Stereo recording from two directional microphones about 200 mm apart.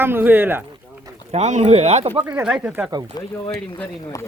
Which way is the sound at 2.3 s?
5° right (ahead or behind).